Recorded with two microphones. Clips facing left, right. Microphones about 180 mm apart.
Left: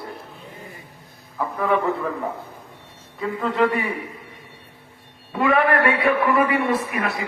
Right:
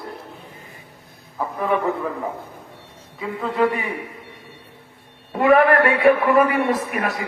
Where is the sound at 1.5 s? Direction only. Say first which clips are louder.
Even; 15° right (ahead or behind).